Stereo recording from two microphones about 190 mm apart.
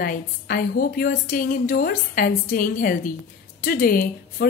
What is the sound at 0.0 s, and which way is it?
Speech, 50° left (ahead or behind).